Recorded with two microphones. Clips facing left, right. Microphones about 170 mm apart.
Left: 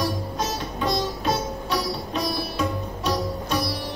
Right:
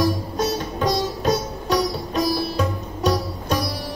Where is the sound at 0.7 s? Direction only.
40° right (ahead or behind).